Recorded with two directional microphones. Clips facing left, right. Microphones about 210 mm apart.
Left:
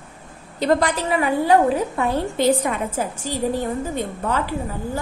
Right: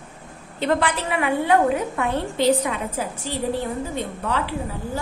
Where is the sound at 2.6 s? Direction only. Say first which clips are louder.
Left 2 dB; 45° left (ahead or behind).